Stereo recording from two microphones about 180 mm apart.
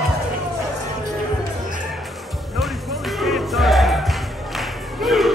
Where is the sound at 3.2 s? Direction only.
Centre (ahead or behind).